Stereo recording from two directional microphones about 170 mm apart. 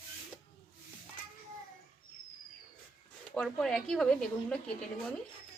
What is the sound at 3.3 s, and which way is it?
Speech, 5° left (ahead or behind).